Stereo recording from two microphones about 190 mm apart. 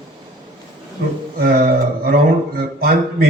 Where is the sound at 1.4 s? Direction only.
50° right (ahead or behind).